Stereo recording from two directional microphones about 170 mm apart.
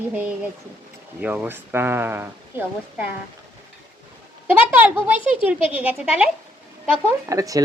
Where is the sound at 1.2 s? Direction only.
10° right (ahead or behind).